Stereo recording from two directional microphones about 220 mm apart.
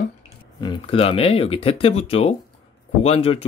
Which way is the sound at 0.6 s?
25° left (ahead or behind).